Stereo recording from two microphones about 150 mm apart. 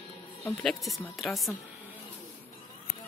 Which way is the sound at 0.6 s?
Centre (ahead or behind).